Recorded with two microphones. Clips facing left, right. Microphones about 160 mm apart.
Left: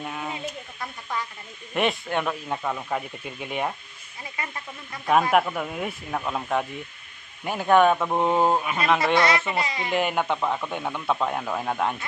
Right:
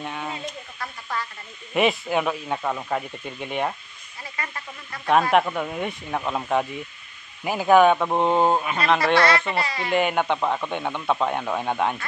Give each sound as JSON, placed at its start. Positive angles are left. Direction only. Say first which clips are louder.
{"t": 0.0, "sound": "a sound", "louder": "right 1 dB", "side_deg": 0}
{"t": 0.3, "sound": "a sound", "louder": "even", "side_deg": 15}
{"t": 1.7, "sound": "speech", "louder": "right 3 dB", "side_deg": -5}
{"t": 4.4, "sound": "a child's voice", "louder": "even", "side_deg": 20}
{"t": 5.3, "sound": "speech", "louder": "right 1 dB", "side_deg": 0}
{"t": 9.0, "sound": "a child's voice", "louder": "right 2 dB", "side_deg": 20}
{"t": 9.8, "sound": "speech", "louder": "right 3 dB", "side_deg": 0}